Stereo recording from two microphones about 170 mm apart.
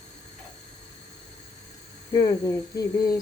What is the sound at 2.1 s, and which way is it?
Speech, 20° left (ahead or behind).